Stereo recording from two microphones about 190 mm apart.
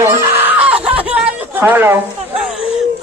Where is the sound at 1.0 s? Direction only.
10° right (ahead or behind).